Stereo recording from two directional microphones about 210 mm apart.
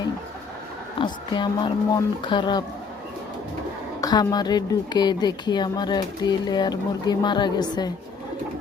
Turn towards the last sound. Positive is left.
turn(degrees=20)  # may be behind; listen again after turning